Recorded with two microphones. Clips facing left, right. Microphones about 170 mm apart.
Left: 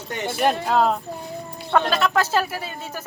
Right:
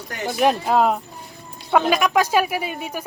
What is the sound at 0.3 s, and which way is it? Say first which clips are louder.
A woman's voice: right 2 dB; 5° right (ahead or behind).